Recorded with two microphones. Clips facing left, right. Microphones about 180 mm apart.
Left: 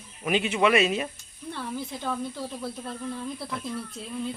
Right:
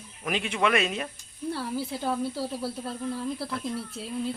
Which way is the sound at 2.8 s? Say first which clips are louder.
Right 2 dB; 5° right (ahead or behind).